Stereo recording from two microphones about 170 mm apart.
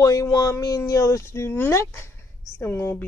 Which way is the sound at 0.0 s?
20° left (ahead or behind).